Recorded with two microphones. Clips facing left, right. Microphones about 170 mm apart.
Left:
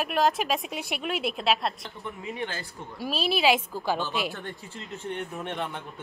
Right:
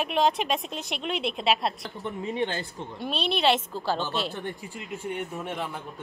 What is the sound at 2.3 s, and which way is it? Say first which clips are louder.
Speech: right 5 dB; 20° right (ahead or behind).